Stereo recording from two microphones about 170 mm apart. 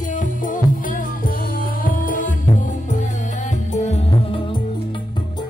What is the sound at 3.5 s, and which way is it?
Music, 45° left (ahead or behind).